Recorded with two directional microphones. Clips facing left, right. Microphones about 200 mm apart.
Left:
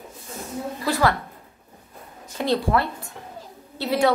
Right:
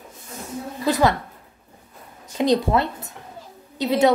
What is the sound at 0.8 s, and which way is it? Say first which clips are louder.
Speech: right 3 dB; 20° right (ahead or behind).